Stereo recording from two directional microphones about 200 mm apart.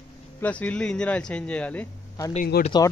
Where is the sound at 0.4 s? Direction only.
5° left (ahead or behind).